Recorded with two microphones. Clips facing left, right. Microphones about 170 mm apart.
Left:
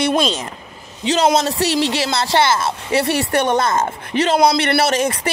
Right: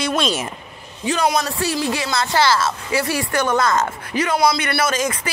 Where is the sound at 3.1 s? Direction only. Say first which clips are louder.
Left 4 dB; 65° left (ahead or behind).